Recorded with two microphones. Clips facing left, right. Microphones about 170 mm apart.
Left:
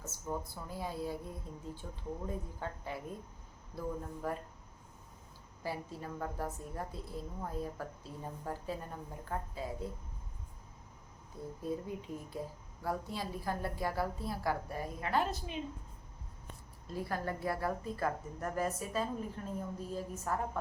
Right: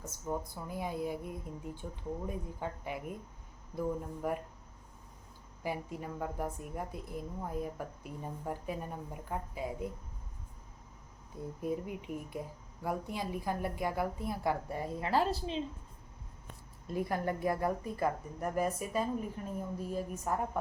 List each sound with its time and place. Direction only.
0.5 s a woman's voice: 20° right (ahead or behind)
5.6 s a woman's voice: 15° right (ahead or behind)
11.6 s a woman's voice: 15° right (ahead or behind)
16.8 s a woman's voice: 20° right (ahead or behind)